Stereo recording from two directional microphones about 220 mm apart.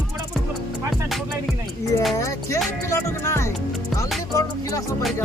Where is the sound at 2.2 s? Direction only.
15° left (ahead or behind).